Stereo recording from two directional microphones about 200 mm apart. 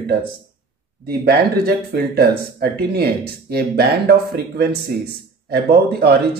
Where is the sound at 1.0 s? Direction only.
50° right (ahead or behind).